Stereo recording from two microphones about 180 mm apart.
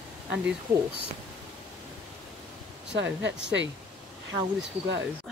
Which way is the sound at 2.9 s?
80° right.